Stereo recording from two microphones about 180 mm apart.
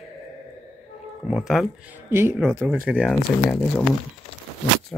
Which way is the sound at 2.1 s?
15° right (ahead or behind).